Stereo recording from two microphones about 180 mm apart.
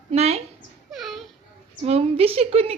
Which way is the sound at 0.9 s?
Centre (ahead or behind).